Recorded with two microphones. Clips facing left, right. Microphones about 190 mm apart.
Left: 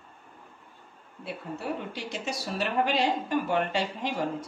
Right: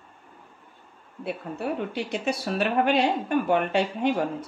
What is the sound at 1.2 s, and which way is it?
A woman's voice, 60° right (ahead or behind).